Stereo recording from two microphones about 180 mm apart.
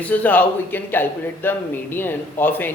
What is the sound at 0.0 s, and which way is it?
A man's voice, 10° left (ahead or behind).